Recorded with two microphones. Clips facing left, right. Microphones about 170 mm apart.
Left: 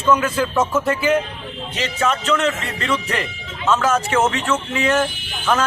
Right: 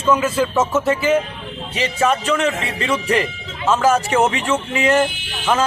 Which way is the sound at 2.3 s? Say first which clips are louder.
Right 1 dB; 10° right (ahead or behind).